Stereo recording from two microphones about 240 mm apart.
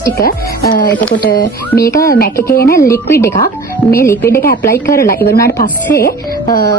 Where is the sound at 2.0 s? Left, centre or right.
Left.